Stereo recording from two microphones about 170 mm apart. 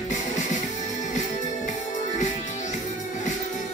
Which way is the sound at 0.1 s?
45° left (ahead or behind).